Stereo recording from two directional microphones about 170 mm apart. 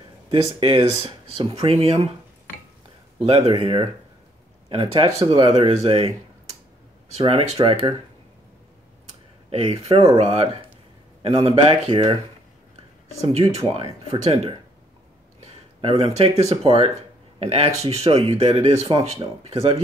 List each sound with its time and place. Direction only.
0.3 s speech: 30° right (ahead or behind)
3.3 s speech: 35° right (ahead or behind)
7.2 s speech: 35° right (ahead or behind)
9.5 s speech: 35° right (ahead or behind)
13.3 s speech: 40° right (ahead or behind)